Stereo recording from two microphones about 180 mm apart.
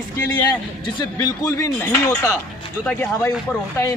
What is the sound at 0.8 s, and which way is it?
A man's voice, 20° left (ahead or behind).